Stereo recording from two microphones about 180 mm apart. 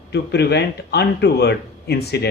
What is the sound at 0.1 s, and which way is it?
A man's voice, 70° left (ahead or behind).